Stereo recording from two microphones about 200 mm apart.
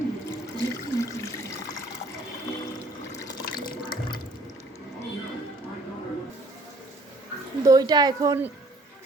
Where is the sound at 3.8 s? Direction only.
25° left (ahead or behind).